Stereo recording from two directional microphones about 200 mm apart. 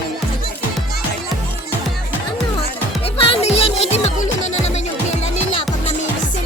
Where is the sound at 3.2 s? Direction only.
30° left (ahead or behind).